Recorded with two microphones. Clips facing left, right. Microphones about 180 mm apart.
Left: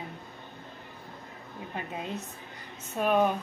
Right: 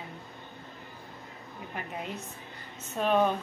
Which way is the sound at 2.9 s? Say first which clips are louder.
Left 1 dB; 10° left (ahead or behind).